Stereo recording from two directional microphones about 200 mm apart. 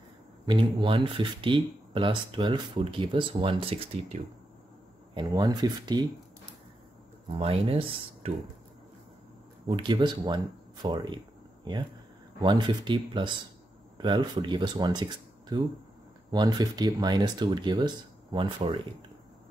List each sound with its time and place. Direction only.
0.7 s speech: 25° right (ahead or behind)
5.1 s speech: 20° right (ahead or behind)
7.2 s speech: 30° right (ahead or behind)
9.7 s speech: 25° right (ahead or behind)
12.4 s speech: 20° right (ahead or behind)